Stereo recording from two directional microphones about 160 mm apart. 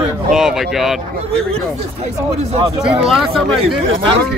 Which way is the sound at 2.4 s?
40° right (ahead or behind).